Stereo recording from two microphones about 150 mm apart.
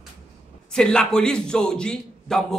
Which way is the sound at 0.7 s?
5° left (ahead or behind).